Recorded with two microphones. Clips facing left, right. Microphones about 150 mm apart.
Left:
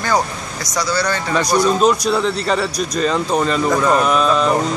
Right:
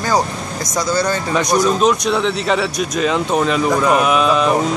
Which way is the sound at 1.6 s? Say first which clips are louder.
Even; centre (ahead or behind).